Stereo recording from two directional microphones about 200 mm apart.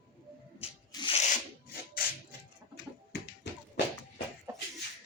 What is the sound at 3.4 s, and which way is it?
Tap, 60° left (ahead or behind).